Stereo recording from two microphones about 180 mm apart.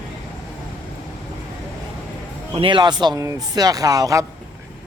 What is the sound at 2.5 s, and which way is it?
A man's voice, 30° right (ahead or behind).